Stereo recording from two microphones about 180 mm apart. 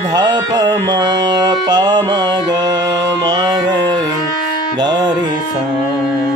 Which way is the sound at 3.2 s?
20° right (ahead or behind).